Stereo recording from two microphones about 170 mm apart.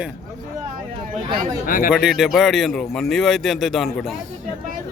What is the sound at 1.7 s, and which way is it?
Speech, 55° left (ahead or behind).